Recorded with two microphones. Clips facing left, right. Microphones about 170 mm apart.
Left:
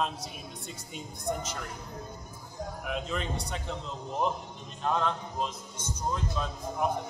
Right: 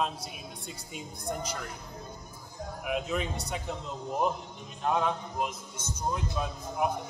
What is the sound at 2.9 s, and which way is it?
Speech, 10° right (ahead or behind).